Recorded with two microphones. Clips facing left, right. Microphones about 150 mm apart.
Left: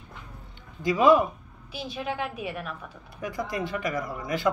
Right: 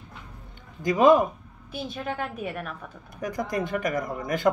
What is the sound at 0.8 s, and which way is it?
A woman's voice, 45° right (ahead or behind).